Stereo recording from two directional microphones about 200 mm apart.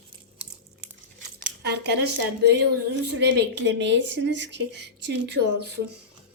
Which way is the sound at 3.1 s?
60° right (ahead or behind).